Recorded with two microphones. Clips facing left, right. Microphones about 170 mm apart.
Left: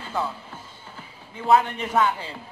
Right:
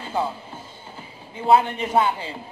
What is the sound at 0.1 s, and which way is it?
Music, 25° right (ahead or behind).